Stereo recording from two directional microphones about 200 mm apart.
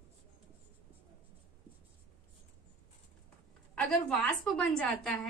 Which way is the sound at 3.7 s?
Centre (ahead or behind).